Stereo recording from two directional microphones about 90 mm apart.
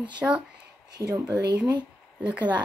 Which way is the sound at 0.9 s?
35° right (ahead or behind).